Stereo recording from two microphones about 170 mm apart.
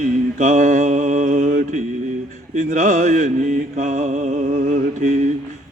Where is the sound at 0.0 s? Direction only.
50° right (ahead or behind).